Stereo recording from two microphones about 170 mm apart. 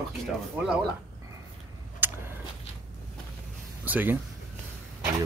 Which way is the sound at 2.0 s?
10° right (ahead or behind).